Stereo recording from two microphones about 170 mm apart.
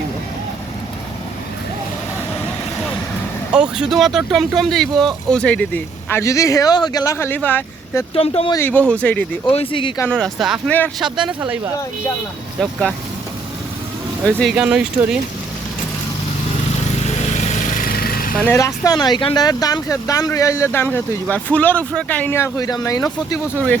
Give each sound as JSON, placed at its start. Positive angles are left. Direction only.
{"t": 3.5, "sound": "speech", "side_deg": -5}
{"t": 8.1, "sound": "speech", "side_deg": 35}
{"t": 8.9, "sound": "speech", "side_deg": 5}
{"t": 9.5, "sound": "speech", "side_deg": 30}
{"t": 10.1, "sound": "speech", "side_deg": 0}
{"t": 10.7, "sound": "speech", "side_deg": 10}
{"t": 11.0, "sound": "speech", "side_deg": -5}
{"t": 14.3, "sound": "speech", "side_deg": 5}
{"t": 14.5, "sound": "speech", "side_deg": -5}
{"t": 17.2, "sound": "vehicle", "side_deg": 40}
{"t": 18.4, "sound": "speech", "side_deg": 15}